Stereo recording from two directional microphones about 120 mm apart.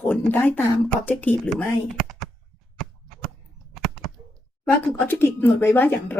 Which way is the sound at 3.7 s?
Centre (ahead or behind).